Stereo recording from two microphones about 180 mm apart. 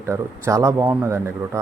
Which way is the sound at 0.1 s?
15° right (ahead or behind).